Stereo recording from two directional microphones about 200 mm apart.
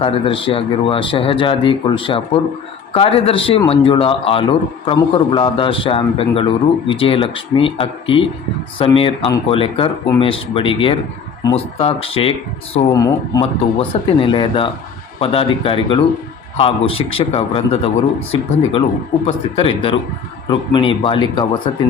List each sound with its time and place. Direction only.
0.0 s a man's voice: 25° left (ahead or behind)
12.9 s a man's voice: 15° left (ahead or behind)